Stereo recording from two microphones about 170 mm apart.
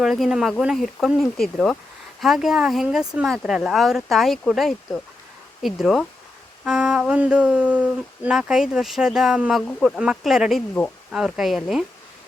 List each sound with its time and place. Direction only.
0.0 s speech: centre (ahead or behind)